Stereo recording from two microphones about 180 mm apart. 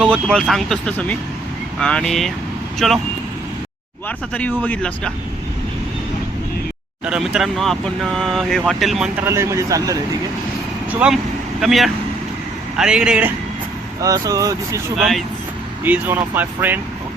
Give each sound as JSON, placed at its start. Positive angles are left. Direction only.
{"t": 0.0, "sound": "speech", "side_deg": 5}
{"t": 4.4, "sound": "speech", "side_deg": 10}
{"t": 7.0, "sound": "speech", "side_deg": -5}
{"t": 9.2, "sound": "speech", "side_deg": -15}
{"t": 11.0, "sound": "speech", "side_deg": -5}
{"t": 14.0, "sound": "speech", "side_deg": -20}
{"t": 14.9, "sound": "speech", "side_deg": 0}